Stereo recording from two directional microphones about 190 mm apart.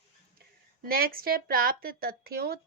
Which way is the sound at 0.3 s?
50° right (ahead or behind).